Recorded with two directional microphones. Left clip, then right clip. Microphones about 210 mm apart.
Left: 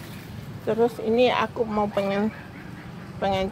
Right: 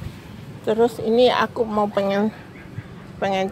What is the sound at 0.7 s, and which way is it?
Speech, 30° right (ahead or behind).